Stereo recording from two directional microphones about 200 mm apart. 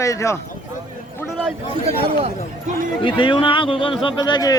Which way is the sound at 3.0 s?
25° left (ahead or behind).